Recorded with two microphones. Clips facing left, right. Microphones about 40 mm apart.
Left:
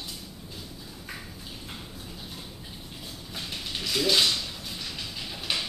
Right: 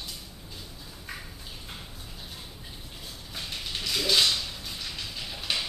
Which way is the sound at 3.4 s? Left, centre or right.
Centre.